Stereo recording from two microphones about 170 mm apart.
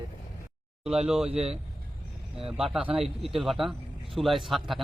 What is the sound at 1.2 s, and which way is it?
Speech, 35° right (ahead or behind).